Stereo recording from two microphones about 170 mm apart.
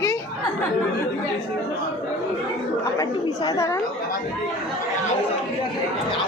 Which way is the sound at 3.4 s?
20° left (ahead or behind).